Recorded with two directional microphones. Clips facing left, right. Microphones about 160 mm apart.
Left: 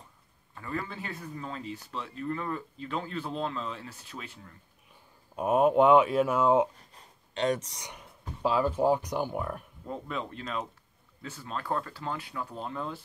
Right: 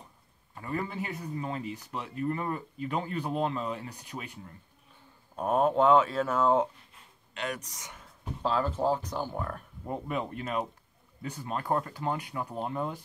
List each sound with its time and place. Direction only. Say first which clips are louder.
0.6 s speech: right 2 dB; 20° right (ahead or behind)
5.3 s speech: left 2 dB; 10° left (ahead or behind)
6.8 s speech: left 2 dB; 40° left (ahead or behind); by 9.7 s 10° left (ahead or behind)
9.8 s speech: right 3 dB; 15° right (ahead or behind)